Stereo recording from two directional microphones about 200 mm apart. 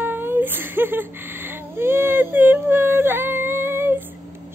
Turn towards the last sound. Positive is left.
turn(degrees=-10)  # may be behind; listen again after turning